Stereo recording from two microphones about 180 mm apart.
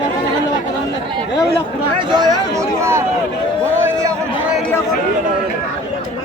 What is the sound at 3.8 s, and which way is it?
Chatter, 15° right (ahead or behind).